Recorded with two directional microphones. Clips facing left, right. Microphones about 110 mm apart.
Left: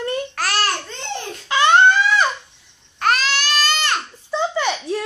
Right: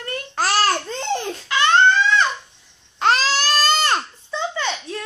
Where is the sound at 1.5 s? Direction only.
15° left (ahead or behind).